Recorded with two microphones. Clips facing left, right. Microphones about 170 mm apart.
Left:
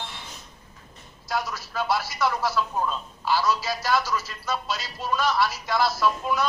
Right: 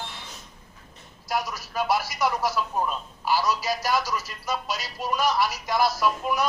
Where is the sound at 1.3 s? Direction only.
15° right (ahead or behind).